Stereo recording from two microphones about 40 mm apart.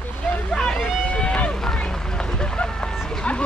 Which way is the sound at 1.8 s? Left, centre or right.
Left.